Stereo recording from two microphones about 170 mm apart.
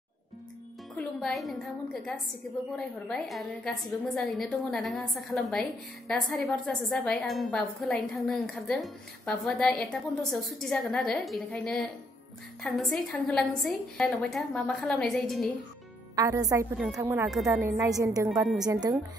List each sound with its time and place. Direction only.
0.9 s a woman's voice: centre (ahead or behind)
16.2 s a woman's voice: 20° right (ahead or behind)
16.7 s a woman's voice: 5° right (ahead or behind)
17.0 s a woman's voice: 15° right (ahead or behind)